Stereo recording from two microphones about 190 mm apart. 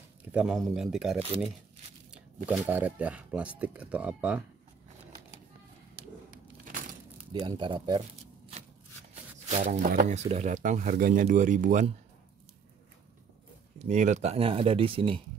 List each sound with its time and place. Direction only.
0.3 s speech: 5° right (ahead or behind)
7.3 s speech: 25° right (ahead or behind)
9.1 s speech: 35° right (ahead or behind)
13.7 s speech: 40° right (ahead or behind)